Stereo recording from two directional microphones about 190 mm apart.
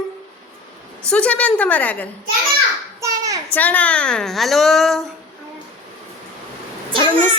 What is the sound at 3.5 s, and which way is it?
A woman's voice, 10° left (ahead or behind).